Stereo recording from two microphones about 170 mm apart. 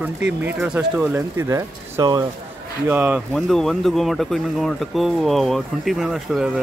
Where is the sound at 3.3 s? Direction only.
Centre (ahead or behind).